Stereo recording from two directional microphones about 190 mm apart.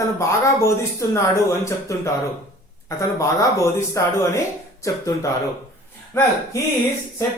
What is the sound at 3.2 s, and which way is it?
Speech, 15° left (ahead or behind).